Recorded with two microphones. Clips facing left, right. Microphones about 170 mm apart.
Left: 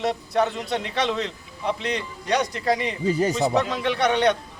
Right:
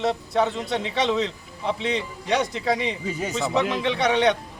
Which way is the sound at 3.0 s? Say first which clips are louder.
Left 7 dB; 35° left (ahead or behind).